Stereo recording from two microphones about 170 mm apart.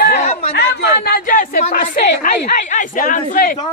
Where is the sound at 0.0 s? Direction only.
70° left (ahead or behind); by 3.5 s 55° left (ahead or behind).